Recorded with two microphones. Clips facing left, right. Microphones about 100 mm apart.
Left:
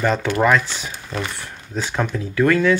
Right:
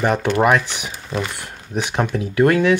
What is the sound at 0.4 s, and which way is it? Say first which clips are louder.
Speech: even; 15° right (ahead or behind).